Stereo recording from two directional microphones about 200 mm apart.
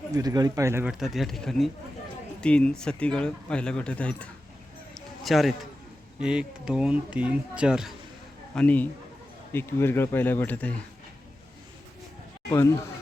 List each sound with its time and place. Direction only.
0.1 s speech: 20° right (ahead or behind)
0.9 s speech: centre (ahead or behind)
8.5 s speech: 5° left (ahead or behind)
12.5 s speech: 15° left (ahead or behind)